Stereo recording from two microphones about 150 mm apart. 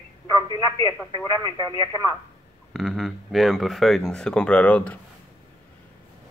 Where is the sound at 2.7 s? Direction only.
Centre (ahead or behind).